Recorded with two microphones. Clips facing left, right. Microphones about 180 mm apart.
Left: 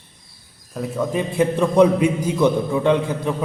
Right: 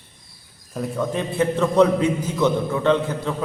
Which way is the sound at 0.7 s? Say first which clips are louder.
Left 2 dB; 5° left (ahead or behind).